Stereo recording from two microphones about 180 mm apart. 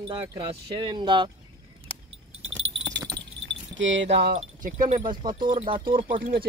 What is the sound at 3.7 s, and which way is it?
Speech, 90° right.